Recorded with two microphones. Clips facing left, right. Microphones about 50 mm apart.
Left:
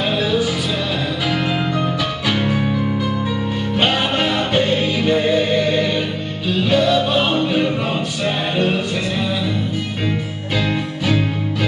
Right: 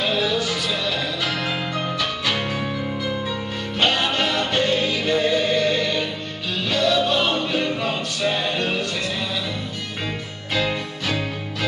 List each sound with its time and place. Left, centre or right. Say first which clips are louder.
0.2 s music: left 4 dB; centre
3.8 s music: left 2 dB; centre
10.5 s music: left 2 dB; centre